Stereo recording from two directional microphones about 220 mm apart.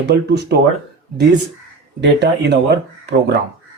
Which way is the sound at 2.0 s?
50° right (ahead or behind).